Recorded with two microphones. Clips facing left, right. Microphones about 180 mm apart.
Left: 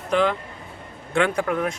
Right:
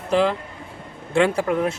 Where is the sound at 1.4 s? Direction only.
25° right (ahead or behind).